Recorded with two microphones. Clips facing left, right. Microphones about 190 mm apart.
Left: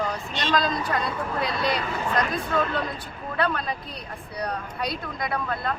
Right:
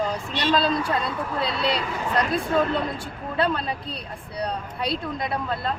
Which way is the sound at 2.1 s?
30° right (ahead or behind).